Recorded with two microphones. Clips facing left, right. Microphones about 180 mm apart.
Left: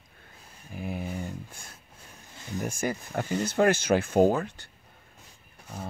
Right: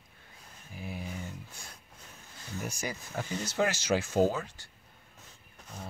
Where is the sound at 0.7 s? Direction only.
55° left (ahead or behind).